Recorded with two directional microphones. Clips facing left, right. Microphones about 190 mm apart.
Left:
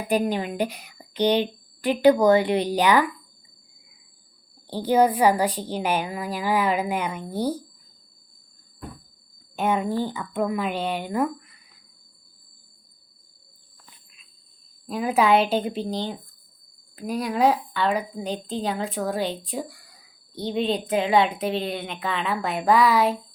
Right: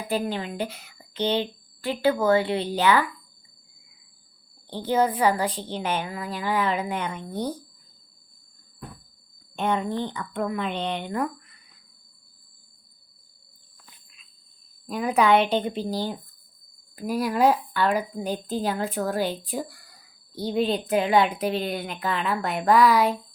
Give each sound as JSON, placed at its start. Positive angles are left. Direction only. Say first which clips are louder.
{"t": 0.1, "sound": "a woman's voice", "louder": "left 4 dB", "side_deg": 15}
{"t": 4.7, "sound": "a woman's voice", "louder": "left 4 dB", "side_deg": 10}
{"t": 9.6, "sound": "a woman's voice", "louder": "left 2 dB", "side_deg": 5}
{"t": 15.0, "sound": "speech", "louder": "even", "side_deg": 0}